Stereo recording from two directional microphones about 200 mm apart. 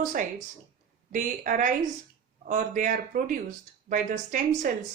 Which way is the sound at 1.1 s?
40° right (ahead or behind).